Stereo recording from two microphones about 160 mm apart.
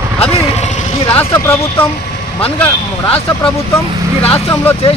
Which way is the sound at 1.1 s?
15° left (ahead or behind).